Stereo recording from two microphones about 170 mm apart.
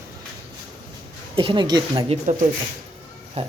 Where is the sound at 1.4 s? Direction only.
30° right (ahead or behind).